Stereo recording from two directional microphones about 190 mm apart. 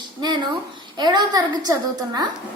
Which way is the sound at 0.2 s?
20° right (ahead or behind).